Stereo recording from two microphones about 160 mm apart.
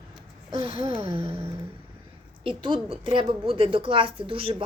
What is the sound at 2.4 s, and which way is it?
A woman's voice, 30° right (ahead or behind).